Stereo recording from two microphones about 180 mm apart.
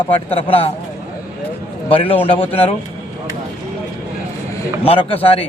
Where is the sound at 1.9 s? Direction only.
30° left (ahead or behind).